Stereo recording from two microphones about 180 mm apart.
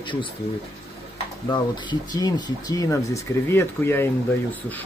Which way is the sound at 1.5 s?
25° left (ahead or behind).